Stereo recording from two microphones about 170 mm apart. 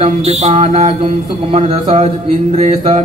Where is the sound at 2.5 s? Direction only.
45° right (ahead or behind).